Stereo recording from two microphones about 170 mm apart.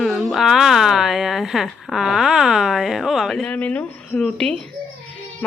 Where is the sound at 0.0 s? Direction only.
Centre (ahead or behind).